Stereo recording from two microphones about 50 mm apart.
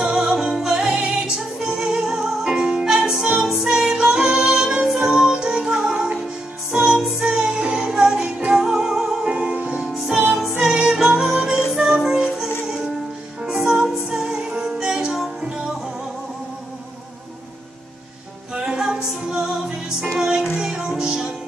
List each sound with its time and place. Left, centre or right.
0.1 s music: centre
7.0 s music: centre
7.2 s music: centre
9.3 s music: right
9.8 s music: centre
18.5 s music: centre